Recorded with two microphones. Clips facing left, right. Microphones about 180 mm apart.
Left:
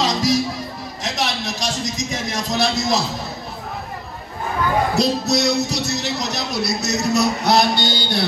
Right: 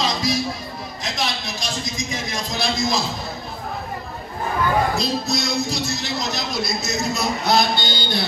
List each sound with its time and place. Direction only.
0.0 s music: 75° left (ahead or behind)
1.0 s a man's voice: 75° left (ahead or behind)
4.9 s speech: 75° left (ahead or behind)